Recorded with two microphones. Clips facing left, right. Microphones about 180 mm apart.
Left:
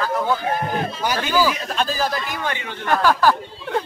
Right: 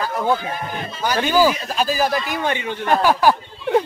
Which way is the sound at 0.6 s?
45° left (ahead or behind).